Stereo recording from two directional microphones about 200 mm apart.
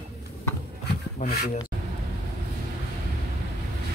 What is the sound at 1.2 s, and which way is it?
Speech, 40° left (ahead or behind).